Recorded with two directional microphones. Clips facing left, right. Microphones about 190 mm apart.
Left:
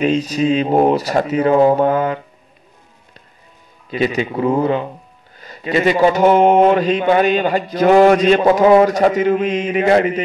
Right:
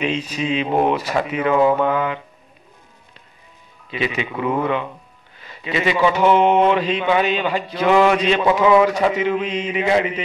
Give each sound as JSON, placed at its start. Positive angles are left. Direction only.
{"t": 0.0, "sound": "speech", "side_deg": 40}
{"t": 3.9, "sound": "a man's voice", "side_deg": 40}